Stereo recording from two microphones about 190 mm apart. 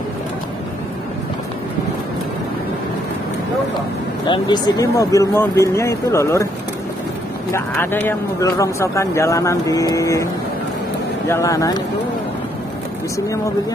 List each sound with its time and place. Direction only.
4.3 s speech: 20° left (ahead or behind)
7.5 s speech: 10° left (ahead or behind)
11.2 s speech: 15° left (ahead or behind)